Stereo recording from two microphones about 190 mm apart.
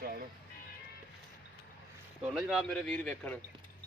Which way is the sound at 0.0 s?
50° right (ahead or behind).